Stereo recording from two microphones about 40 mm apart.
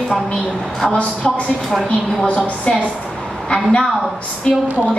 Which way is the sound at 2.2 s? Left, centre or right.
Left.